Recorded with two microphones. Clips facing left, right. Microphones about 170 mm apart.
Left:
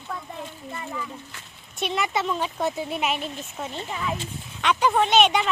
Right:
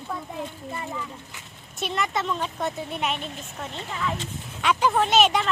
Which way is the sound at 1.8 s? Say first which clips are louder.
Left 1 dB; centre (ahead or behind).